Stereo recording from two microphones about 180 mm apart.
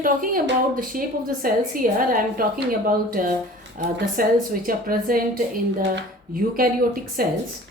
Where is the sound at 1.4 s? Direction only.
50° right (ahead or behind).